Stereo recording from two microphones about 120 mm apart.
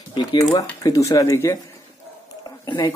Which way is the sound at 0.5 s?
30° left (ahead or behind).